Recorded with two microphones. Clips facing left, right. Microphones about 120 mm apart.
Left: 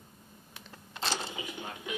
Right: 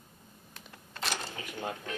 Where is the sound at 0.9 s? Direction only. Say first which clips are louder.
Left 2 dB; 30° left (ahead or behind).